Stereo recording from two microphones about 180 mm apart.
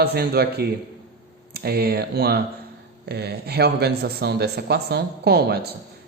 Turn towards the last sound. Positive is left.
turn(degrees=-60)  # may be behind; listen again after turning